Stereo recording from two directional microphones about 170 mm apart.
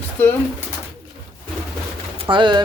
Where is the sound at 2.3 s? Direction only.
25° right (ahead or behind).